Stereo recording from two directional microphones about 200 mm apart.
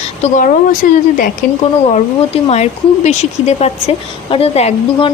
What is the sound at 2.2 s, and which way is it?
Speech, 30° left (ahead or behind).